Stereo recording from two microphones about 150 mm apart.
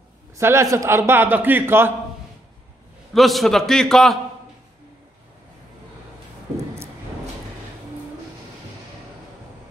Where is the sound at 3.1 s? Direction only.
Centre (ahead or behind).